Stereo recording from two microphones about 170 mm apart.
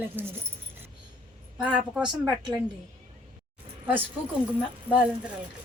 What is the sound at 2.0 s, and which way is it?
Speech, 25° right (ahead or behind).